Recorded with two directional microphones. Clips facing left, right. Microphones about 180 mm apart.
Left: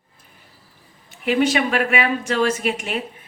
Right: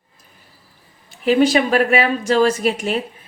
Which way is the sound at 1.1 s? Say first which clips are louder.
Right 4 dB; 35° right (ahead or behind).